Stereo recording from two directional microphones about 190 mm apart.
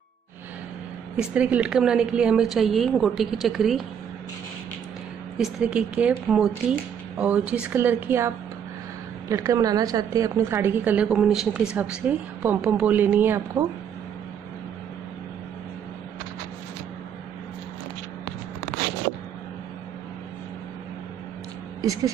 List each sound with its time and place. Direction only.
1.1 s a woman's voice: 5° right (ahead or behind)
5.4 s a woman's voice: 5° right (ahead or behind)
9.3 s a woman's voice: 15° right (ahead or behind)
21.8 s a woman's voice: 20° right (ahead or behind)